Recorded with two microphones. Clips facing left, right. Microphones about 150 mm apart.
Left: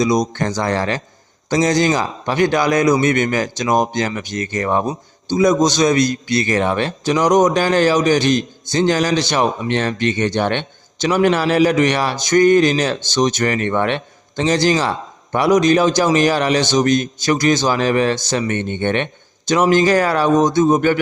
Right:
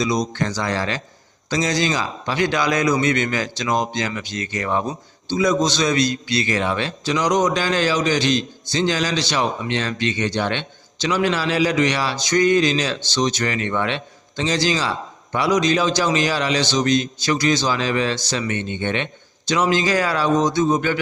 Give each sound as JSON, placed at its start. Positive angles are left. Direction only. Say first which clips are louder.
{"t": 0.0, "sound": "a man's voice", "louder": "left 5 dB", "side_deg": 45}
{"t": 6.2, "sound": "speech", "louder": "left 4 dB", "side_deg": -20}
{"t": 6.5, "sound": "a man's voice", "louder": "left 5 dB", "side_deg": 55}